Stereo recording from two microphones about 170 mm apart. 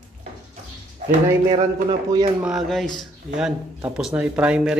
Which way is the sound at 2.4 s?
Centre (ahead or behind).